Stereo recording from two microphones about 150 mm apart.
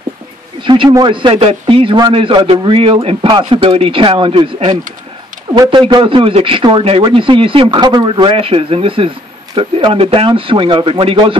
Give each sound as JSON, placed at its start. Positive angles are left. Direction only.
{"t": 0.6, "sound": "a man's voice", "side_deg": -35}